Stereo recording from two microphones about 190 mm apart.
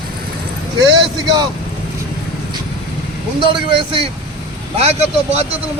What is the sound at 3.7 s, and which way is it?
A man's voice, 30° right (ahead or behind).